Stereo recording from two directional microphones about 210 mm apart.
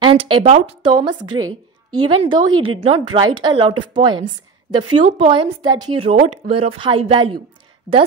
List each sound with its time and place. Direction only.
0.0 s a woman's voice: 25° right (ahead or behind)